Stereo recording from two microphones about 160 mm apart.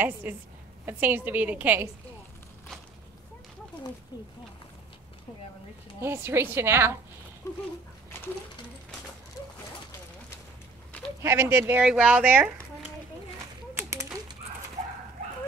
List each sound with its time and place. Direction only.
0.0 s a woman's voice: 10° right (ahead or behind)
5.9 s a woman's voice: 15° right (ahead or behind)
7.4 s dog: 20° left (ahead or behind)
10.9 s a sound: 10° left (ahead or behind)
11.2 s a woman's voice: 15° right (ahead or behind)
13.7 s a sound: 15° right (ahead or behind)